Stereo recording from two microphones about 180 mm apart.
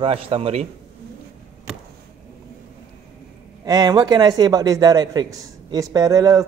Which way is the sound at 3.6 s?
20° right (ahead or behind).